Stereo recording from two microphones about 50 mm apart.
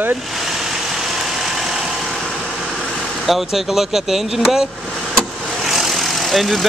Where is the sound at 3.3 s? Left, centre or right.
Centre.